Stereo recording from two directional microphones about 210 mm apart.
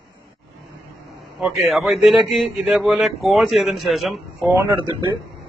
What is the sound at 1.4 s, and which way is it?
A man's voice, centre (ahead or behind).